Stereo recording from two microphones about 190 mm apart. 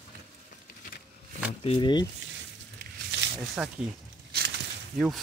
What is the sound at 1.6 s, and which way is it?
Speech, 25° left (ahead or behind).